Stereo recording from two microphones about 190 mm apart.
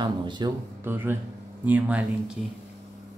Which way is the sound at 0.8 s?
10° right (ahead or behind).